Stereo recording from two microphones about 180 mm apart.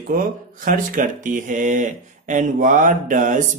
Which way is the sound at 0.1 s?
50° right (ahead or behind).